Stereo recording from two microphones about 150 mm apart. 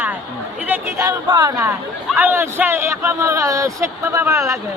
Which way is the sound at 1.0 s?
25° right (ahead or behind).